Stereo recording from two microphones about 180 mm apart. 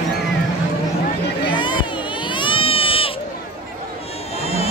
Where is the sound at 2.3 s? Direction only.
30° left (ahead or behind).